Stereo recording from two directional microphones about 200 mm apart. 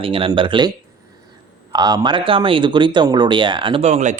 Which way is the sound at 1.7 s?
20° right (ahead or behind).